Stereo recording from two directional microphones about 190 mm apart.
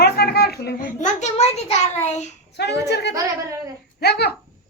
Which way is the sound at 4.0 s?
60° left (ahead or behind).